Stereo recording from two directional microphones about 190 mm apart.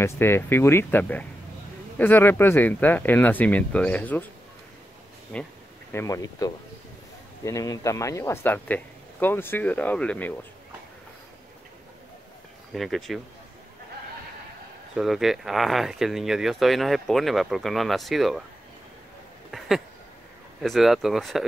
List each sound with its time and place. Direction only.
0.0 s speech: 10° left (ahead or behind)
5.3 s speech: 5° left (ahead or behind)
12.7 s speech: centre (ahead or behind)
15.0 s speech: centre (ahead or behind)
19.5 s a sound: centre (ahead or behind)
20.6 s speech: centre (ahead or behind)